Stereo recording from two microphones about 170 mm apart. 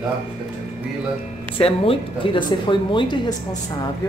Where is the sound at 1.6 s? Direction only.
30° left (ahead or behind).